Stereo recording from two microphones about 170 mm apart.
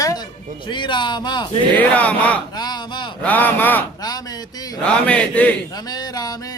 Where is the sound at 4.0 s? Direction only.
20° left (ahead or behind).